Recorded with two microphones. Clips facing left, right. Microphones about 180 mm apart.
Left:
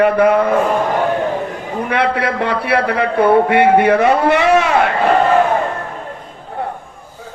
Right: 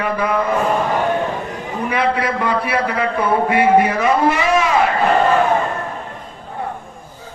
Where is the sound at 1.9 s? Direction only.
65° left (ahead or behind).